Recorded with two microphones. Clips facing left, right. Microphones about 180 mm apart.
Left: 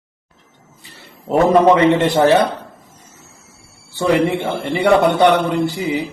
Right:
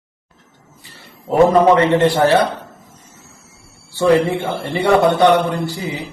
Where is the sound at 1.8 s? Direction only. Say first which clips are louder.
Left 1 dB; 20° left (ahead or behind).